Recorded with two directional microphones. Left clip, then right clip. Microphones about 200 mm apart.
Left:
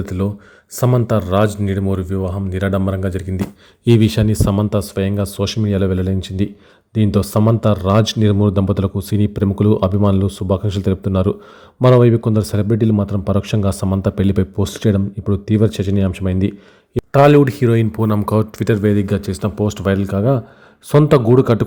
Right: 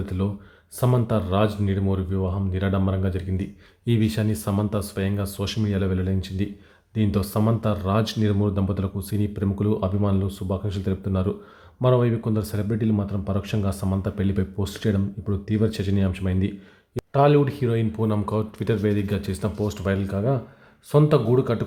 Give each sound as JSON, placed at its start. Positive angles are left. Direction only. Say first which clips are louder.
{"t": 0.0, "sound": "a man's voice", "louder": "left 7 dB", "side_deg": 30}